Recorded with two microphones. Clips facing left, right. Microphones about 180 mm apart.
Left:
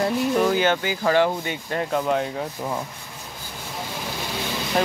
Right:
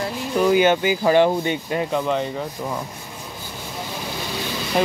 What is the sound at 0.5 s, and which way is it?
Speech, 15° right (ahead or behind).